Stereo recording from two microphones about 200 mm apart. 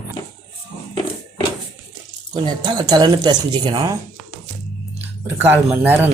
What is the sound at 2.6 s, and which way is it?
Speech, 20° right (ahead or behind).